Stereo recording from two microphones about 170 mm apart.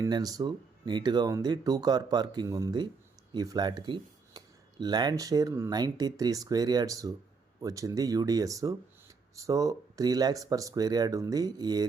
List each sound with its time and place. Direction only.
0.0 s speech: 20° right (ahead or behind)